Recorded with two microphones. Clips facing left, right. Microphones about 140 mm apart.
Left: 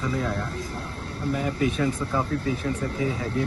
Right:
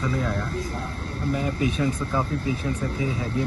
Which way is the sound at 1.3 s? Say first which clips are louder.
Even; 20° right (ahead or behind).